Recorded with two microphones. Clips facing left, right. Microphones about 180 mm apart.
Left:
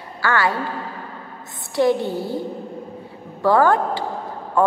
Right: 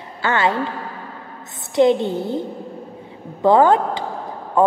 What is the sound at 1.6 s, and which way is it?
Speech, 20° right (ahead or behind).